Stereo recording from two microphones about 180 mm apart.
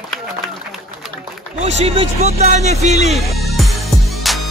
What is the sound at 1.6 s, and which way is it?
Speech, 40° right (ahead or behind).